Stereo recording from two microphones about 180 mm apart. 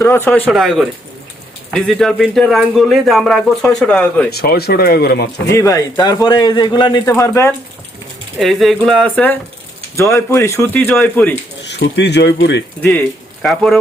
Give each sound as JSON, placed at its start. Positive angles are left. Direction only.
{"t": 0.0, "sound": "speech", "side_deg": 10}
{"t": 4.3, "sound": "speech", "side_deg": 60}
{"t": 5.5, "sound": "a man's voice", "side_deg": 20}
{"t": 8.4, "sound": "speech", "side_deg": 0}
{"t": 11.6, "sound": "speech", "side_deg": 70}
{"t": 13.4, "sound": "speech", "side_deg": 5}